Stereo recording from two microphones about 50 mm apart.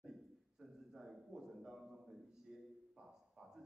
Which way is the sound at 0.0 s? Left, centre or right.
Centre.